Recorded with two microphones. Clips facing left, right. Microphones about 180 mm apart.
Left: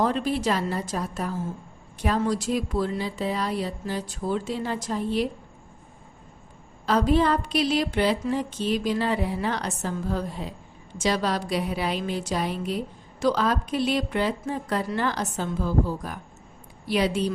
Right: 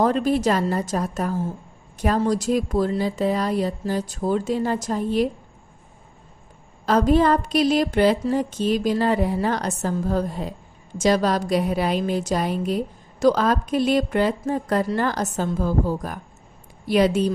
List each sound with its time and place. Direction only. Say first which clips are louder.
0.0 s a woman's voice: right 5 dB; 45° right (ahead or behind)
6.8 s a woman's voice: right 4 dB; 45° right (ahead or behind)